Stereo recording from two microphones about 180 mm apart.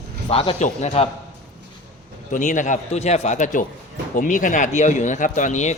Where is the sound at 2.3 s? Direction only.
45° left (ahead or behind).